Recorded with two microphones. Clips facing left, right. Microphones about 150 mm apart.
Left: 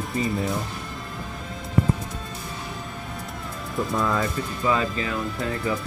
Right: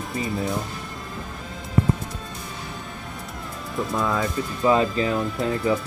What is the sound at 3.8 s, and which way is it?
Speech, centre (ahead or behind).